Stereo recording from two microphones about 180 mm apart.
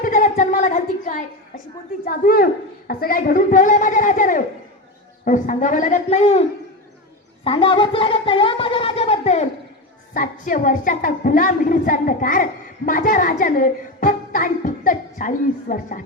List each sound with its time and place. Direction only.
0.0 s a sound: 45° left (ahead or behind)
2.0 s a woman's voice: 55° left (ahead or behind); by 6.4 s 35° left (ahead or behind)
7.4 s speech: 30° left (ahead or behind)
10.2 s a woman's voice: 50° left (ahead or behind)